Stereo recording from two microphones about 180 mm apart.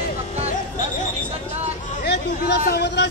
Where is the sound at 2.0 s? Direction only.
70° left (ahead or behind).